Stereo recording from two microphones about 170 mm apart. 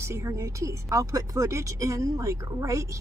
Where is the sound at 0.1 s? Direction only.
15° right (ahead or behind).